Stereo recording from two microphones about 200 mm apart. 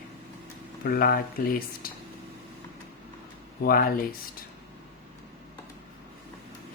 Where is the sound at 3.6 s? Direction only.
50° left (ahead or behind).